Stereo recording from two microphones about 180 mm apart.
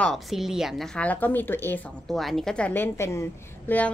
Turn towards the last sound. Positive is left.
turn(degrees=10)  # may be behind; listen again after turning